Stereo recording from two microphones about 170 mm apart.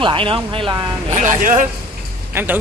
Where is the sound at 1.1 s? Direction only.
45° right (ahead or behind).